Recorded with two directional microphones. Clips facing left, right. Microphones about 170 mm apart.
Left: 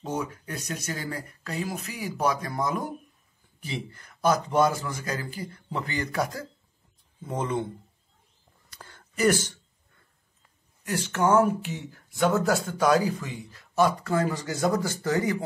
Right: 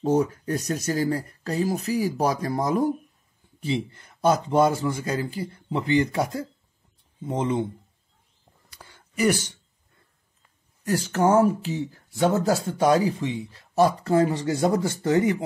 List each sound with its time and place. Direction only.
0.0 s speech: 40° right (ahead or behind); by 7.6 s 20° right (ahead or behind)
8.6 s a sound: 10° right (ahead or behind)
10.9 s speech: 35° right (ahead or behind)